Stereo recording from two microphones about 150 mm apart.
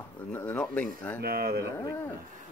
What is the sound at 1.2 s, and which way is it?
Speech, 90° right.